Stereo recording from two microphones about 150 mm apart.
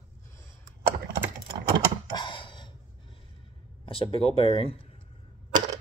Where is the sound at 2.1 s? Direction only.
35° left (ahead or behind).